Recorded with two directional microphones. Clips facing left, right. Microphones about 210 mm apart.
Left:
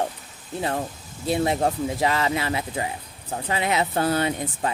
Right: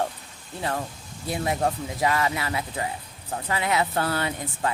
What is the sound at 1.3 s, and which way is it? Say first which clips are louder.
Speech: left 4 dB; 25° left (ahead or behind).